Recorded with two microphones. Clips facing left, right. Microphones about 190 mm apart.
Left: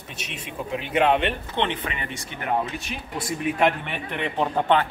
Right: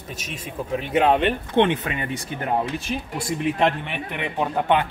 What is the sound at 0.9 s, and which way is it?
Speech, 40° right (ahead or behind).